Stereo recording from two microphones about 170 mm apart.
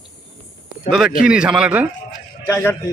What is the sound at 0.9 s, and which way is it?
Speech, 55° left (ahead or behind).